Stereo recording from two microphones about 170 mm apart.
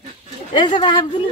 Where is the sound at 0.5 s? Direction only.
30° left (ahead or behind).